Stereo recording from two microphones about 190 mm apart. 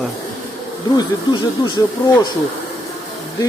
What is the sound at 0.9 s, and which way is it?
Speech, 25° left (ahead or behind).